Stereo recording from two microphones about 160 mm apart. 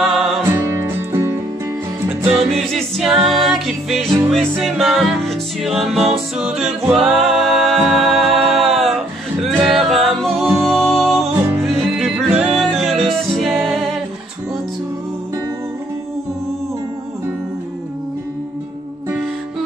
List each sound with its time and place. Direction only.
0.0 s music: centre (ahead or behind)
0.6 s music: 15° right (ahead or behind)
2.3 s music: centre (ahead or behind)